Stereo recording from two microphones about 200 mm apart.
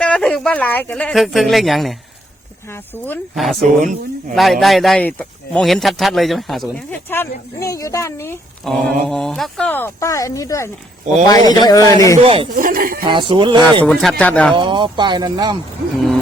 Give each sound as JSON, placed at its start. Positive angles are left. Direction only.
{"t": 0.0, "sound": "speech", "side_deg": 5}
{"t": 2.6, "sound": "speech", "side_deg": 10}
{"t": 8.7, "sound": "speech", "side_deg": 0}
{"t": 12.2, "sound": "speech", "side_deg": -30}
{"t": 12.5, "sound": "speech", "side_deg": -45}
{"t": 13.1, "sound": "speech", "side_deg": -25}
{"t": 13.8, "sound": "speech", "side_deg": 0}
{"t": 14.5, "sound": "speech", "side_deg": -25}